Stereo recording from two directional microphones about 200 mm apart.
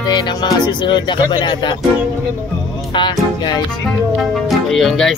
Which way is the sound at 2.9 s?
25° left (ahead or behind).